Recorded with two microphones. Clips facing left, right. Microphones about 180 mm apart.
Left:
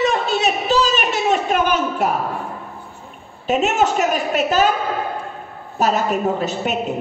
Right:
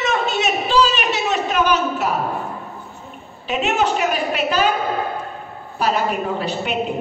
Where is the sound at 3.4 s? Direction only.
45° left (ahead or behind).